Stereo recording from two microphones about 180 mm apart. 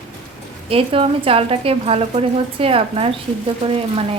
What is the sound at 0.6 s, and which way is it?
A woman's voice, 30° right (ahead or behind).